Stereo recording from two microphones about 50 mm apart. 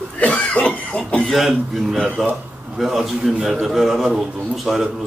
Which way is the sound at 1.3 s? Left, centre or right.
Centre.